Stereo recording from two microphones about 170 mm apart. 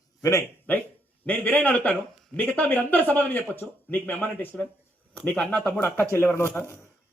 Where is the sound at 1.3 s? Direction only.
10° left (ahead or behind).